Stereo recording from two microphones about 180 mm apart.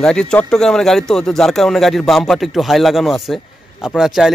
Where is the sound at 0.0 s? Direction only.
5° left (ahead or behind).